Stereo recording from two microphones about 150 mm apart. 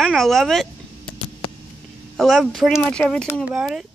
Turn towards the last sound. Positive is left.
turn(degrees=0)  # may be behind; listen again after turning